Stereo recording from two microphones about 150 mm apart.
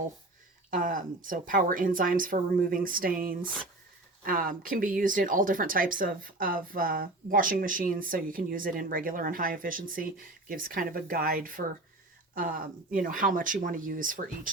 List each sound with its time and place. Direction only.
0.7 s speech: 65° right (ahead or behind)